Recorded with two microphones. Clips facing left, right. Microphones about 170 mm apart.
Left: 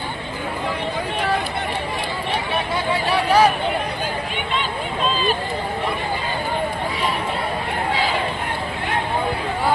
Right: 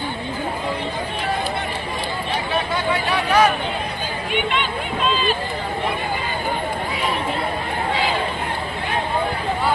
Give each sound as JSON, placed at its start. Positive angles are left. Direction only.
{"t": 2.9, "sound": "speech", "side_deg": 30}